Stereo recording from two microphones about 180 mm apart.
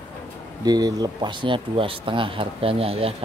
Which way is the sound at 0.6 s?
20° right (ahead or behind).